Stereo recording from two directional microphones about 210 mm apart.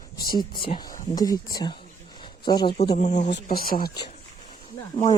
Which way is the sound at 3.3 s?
50° left (ahead or behind).